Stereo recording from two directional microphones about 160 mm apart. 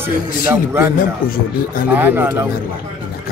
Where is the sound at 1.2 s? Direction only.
60° left (ahead or behind).